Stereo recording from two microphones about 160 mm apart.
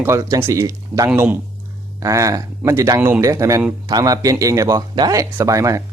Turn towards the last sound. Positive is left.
turn(degrees=-20)  # may be behind; listen again after turning